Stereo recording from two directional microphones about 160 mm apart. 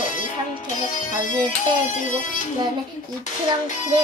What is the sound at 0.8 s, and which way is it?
Music, 50° left (ahead or behind).